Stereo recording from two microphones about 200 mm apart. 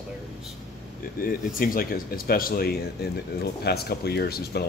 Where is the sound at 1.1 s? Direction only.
45° left (ahead or behind).